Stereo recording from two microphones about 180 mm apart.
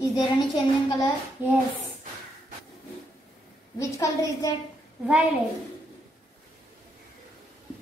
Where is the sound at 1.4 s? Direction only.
10° right (ahead or behind).